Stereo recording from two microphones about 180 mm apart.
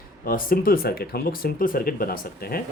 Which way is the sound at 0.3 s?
50° left (ahead or behind).